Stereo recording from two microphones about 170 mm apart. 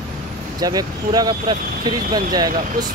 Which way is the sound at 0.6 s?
20° right (ahead or behind).